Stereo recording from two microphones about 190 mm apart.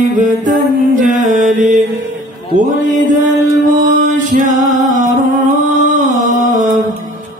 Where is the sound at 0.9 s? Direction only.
40° right (ahead or behind).